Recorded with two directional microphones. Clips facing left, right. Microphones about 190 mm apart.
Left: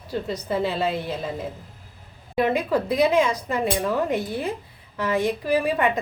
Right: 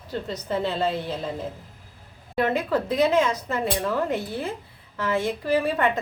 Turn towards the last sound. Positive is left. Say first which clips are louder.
# left 1 dB
turn(degrees=15)  # may be behind; listen again after turning